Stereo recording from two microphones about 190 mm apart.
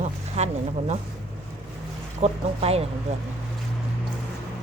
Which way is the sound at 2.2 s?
30° right (ahead or behind).